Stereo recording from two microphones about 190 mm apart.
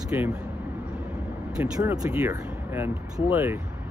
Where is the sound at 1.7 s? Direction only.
20° right (ahead or behind).